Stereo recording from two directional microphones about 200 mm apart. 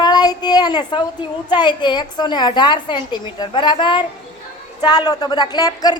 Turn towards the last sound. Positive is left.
turn(degrees=20)  # may be behind; listen again after turning